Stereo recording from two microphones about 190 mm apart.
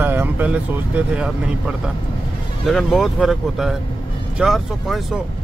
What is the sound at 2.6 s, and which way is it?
Speech, centre (ahead or behind).